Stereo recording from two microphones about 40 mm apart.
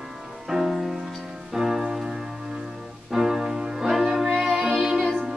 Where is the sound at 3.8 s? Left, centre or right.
Centre.